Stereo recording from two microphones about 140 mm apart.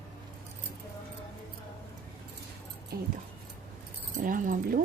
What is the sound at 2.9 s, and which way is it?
Speech, 90° right.